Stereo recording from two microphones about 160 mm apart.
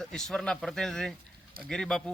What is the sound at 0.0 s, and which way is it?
Speech, 5° left (ahead or behind).